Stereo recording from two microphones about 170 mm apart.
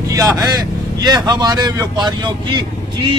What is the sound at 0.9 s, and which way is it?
A man's voice, 20° right (ahead or behind).